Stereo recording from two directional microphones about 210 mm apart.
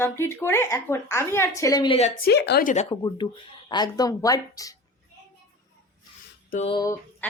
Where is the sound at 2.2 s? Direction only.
50° left (ahead or behind).